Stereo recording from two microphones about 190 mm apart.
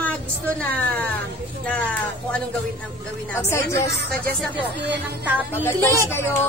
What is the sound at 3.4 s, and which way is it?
Speech, 15° left (ahead or behind).